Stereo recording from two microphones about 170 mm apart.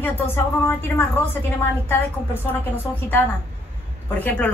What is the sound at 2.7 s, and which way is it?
A woman's voice, 10° left (ahead or behind).